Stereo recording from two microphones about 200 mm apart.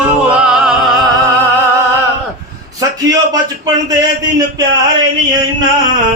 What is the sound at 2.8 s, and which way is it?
Speech, 15° right (ahead or behind).